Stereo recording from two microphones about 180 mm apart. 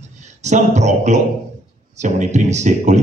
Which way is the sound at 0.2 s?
40° right (ahead or behind).